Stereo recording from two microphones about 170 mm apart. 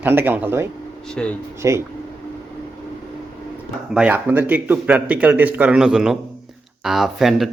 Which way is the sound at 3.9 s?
10° right (ahead or behind).